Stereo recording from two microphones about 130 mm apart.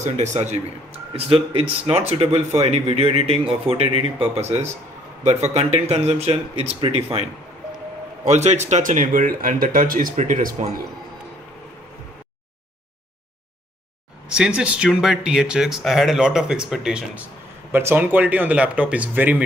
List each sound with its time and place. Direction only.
0.0 s a man's voice: 60° right (ahead or behind)
1.1 s speech: 45° right (ahead or behind)
8.3 s a man's voice: 60° right (ahead or behind)
8.6 s speech: 75° right (ahead or behind)
14.3 s speech: 5° right (ahead or behind)
17.7 s speech: 15° right (ahead or behind)